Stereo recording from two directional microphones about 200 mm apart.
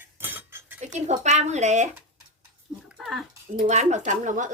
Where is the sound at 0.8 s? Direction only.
35° right (ahead or behind).